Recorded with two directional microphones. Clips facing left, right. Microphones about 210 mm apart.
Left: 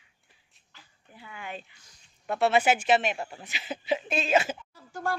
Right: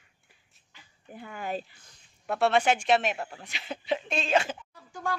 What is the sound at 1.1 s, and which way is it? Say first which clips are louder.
Speech: right 6 dB; 50° right (ahead or behind).